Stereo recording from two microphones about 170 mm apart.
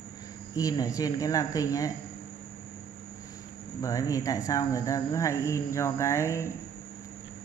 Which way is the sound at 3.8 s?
20° left (ahead or behind).